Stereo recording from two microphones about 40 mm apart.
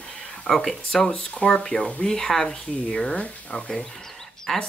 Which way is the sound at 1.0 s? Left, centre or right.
Left.